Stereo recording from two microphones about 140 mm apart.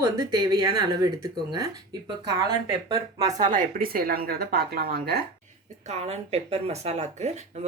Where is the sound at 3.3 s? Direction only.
60° right (ahead or behind); by 5.0 s 90° right.